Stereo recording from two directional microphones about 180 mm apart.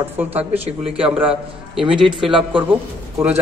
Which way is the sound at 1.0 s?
5° right (ahead or behind).